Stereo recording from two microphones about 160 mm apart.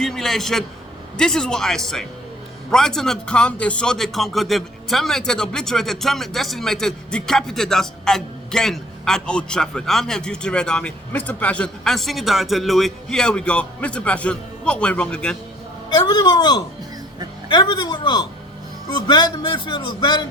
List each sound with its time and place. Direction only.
0.0 s a sound: centre (ahead or behind)
1.1 s a man's voice: 5° left (ahead or behind)
15.9 s a man's voice: 25° left (ahead or behind)